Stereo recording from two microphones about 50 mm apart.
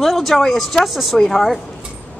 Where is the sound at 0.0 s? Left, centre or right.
Centre.